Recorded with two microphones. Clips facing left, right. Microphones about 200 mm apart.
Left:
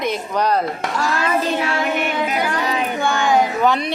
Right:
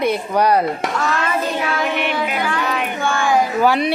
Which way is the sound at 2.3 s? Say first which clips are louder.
Even; 40° left (ahead or behind).